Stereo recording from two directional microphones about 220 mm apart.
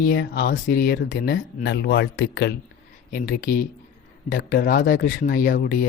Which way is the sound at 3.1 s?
40° left (ahead or behind).